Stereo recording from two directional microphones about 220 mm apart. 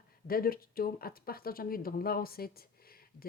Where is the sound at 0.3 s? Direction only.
40° left (ahead or behind).